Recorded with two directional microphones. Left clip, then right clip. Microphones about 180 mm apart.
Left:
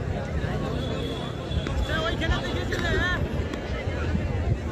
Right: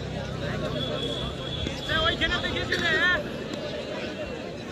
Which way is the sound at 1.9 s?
30° left (ahead or behind).